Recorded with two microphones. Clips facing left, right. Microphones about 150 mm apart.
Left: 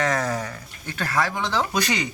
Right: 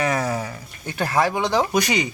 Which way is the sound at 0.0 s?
10° right (ahead or behind).